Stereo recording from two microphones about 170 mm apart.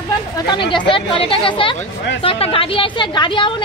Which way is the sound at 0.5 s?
30° left (ahead or behind).